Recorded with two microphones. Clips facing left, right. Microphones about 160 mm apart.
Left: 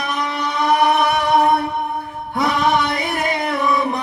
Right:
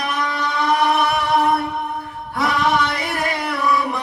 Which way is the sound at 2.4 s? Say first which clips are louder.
Left 1 dB; 20° left (ahead or behind).